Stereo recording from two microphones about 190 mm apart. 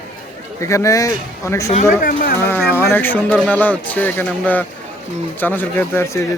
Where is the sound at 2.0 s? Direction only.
50° left (ahead or behind).